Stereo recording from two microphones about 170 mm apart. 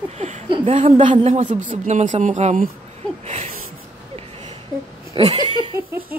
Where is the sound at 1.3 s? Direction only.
45° right (ahead or behind).